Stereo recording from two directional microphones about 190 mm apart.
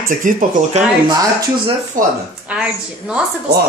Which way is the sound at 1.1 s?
20° right (ahead or behind).